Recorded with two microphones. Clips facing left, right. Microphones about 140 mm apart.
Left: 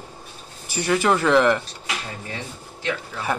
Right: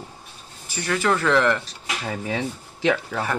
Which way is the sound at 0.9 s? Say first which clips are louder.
Left 2 dB; 15° left (ahead or behind).